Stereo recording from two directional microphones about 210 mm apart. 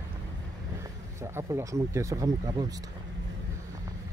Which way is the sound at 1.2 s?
15° right (ahead or behind).